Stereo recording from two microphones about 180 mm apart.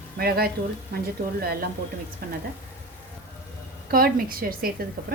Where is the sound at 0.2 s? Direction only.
60° right (ahead or behind).